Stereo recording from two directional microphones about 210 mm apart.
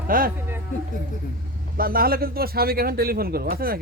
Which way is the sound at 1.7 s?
45° right (ahead or behind).